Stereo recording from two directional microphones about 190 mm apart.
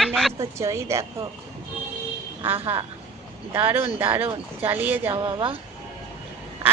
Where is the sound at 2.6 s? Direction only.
30° right (ahead or behind).